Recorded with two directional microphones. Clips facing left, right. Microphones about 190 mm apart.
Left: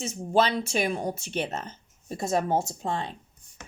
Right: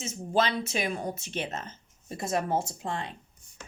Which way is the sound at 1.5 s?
30° left (ahead or behind).